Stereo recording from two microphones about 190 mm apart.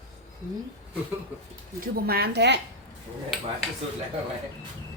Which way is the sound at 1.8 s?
55° right (ahead or behind).